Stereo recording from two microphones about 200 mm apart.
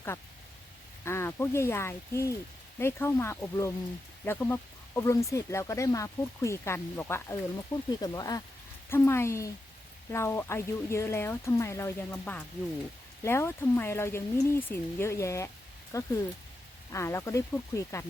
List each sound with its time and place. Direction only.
1.0 s speech: 15° left (ahead or behind)